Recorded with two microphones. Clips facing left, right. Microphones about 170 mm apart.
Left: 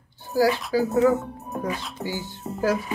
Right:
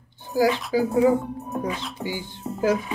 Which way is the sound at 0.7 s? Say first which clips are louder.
Right 1 dB; 15° right (ahead or behind).